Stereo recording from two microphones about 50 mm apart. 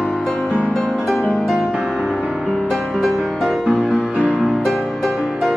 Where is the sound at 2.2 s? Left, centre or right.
Right.